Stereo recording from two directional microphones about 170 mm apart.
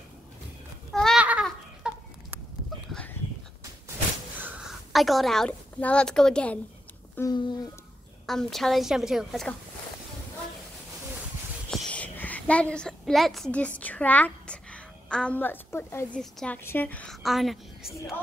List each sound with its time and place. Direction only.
0.9 s a sound: 5° left (ahead or behind)
4.4 s a woman's voice: centre (ahead or behind)
7.2 s speech: 25° left (ahead or behind)
8.3 s a woman's voice: centre (ahead or behind)
11.7 s a woman's voice: 10° left (ahead or behind)
16.2 s a woman's voice: 5° left (ahead or behind)